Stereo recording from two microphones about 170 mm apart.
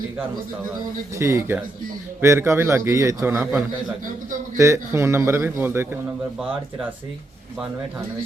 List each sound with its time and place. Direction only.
1.1 s a man's voice: 15° right (ahead or behind)